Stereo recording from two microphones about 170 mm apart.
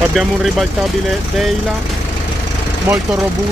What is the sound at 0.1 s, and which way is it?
Speech, centre (ahead or behind).